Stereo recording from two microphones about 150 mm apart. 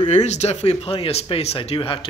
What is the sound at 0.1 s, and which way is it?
Speech, 50° left (ahead or behind).